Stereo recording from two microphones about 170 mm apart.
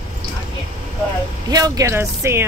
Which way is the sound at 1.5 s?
20° right (ahead or behind).